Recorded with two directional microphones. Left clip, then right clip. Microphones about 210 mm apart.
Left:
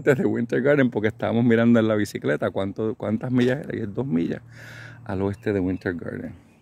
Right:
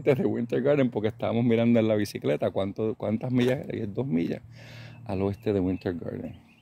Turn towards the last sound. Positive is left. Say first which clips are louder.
# left 3 dB
turn(degrees=10)  # may be behind; listen again after turning